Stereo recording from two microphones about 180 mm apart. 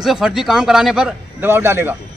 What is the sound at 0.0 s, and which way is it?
A man's voice, centre (ahead or behind).